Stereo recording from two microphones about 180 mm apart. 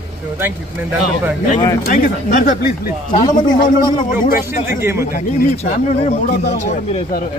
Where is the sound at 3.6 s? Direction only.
25° left (ahead or behind).